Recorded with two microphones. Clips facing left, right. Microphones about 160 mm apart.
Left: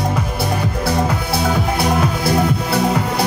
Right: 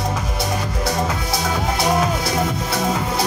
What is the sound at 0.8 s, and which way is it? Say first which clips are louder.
Music: left 3 dB; 60° left (ahead or behind).